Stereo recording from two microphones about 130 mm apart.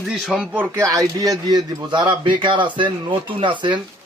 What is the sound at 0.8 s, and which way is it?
A man's voice, 25° right (ahead or behind).